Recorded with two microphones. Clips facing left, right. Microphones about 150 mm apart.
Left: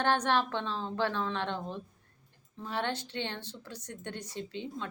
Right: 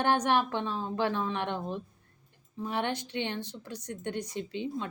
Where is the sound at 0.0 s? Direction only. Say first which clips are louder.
Right 2 dB; 15° right (ahead or behind).